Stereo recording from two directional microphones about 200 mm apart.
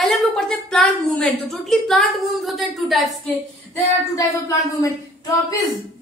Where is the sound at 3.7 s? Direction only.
15° left (ahead or behind).